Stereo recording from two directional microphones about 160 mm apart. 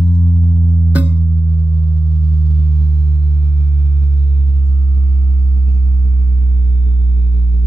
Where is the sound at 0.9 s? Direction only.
10° right (ahead or behind).